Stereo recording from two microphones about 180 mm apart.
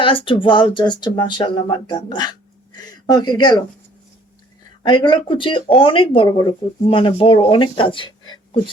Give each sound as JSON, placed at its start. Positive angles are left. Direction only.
{"t": 0.0, "sound": "speech", "side_deg": 30}
{"t": 4.8, "sound": "speech", "side_deg": 25}